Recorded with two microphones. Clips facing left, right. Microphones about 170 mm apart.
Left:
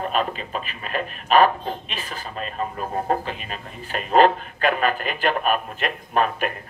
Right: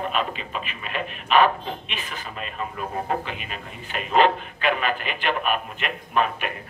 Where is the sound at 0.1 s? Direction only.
40° left (ahead or behind).